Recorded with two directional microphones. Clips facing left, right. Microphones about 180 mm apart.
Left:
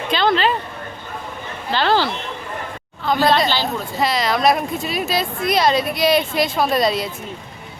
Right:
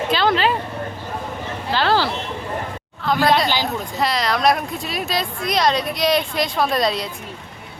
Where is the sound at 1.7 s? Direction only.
5° right (ahead or behind).